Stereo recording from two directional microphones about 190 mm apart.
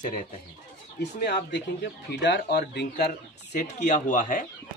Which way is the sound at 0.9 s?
60° left (ahead or behind).